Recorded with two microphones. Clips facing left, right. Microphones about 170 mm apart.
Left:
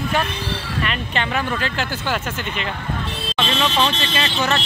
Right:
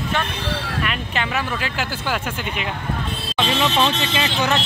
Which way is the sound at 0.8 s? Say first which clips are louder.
Left 1 dB; 5° right (ahead or behind).